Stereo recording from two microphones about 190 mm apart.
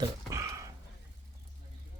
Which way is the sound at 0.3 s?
15° right (ahead or behind).